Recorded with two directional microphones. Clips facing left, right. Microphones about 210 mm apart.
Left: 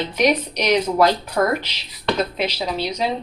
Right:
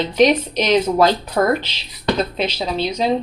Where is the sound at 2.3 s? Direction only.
25° right (ahead or behind).